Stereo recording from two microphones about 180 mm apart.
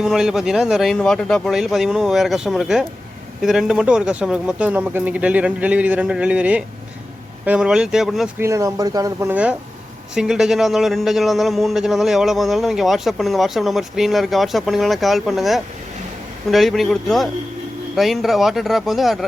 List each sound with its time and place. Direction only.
0.0 s a man's voice: 5° right (ahead or behind)
8.4 s speech: 15° right (ahead or behind)
9.3 s a man's voice: 5° right (ahead or behind)